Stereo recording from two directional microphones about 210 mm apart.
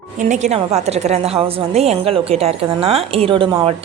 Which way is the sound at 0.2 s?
35° right (ahead or behind).